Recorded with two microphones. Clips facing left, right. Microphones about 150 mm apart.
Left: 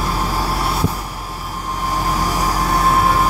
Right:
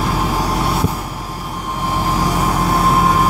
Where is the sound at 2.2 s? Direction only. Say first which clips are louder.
Right 2 dB; 20° right (ahead or behind).